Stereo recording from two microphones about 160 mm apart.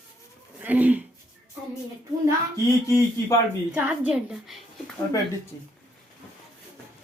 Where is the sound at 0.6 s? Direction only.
10° right (ahead or behind).